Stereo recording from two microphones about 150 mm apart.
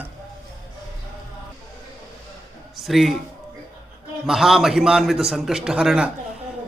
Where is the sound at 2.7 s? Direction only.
Centre (ahead or behind).